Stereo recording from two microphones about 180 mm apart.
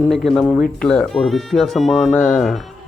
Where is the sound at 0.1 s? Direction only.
Centre (ahead or behind).